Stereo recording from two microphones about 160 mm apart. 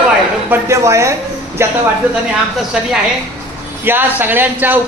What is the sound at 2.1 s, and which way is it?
A woman's voice, 5° right (ahead or behind).